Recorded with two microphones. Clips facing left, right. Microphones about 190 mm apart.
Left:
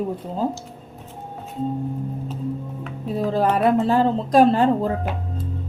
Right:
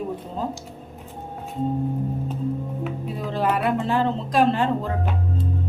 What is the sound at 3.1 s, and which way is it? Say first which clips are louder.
A man's voice: left 5 dB; 40° left (ahead or behind).